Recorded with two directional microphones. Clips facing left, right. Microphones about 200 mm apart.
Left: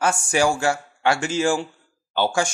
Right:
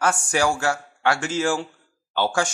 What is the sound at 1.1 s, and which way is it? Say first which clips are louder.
Speech: left 4 dB; 10° left (ahead or behind).